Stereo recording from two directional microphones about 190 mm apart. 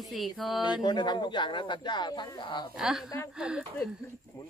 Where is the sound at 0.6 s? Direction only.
25° left (ahead or behind).